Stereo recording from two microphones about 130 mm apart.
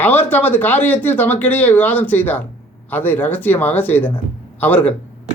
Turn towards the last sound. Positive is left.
turn(degrees=10)  # may be behind; listen again after turning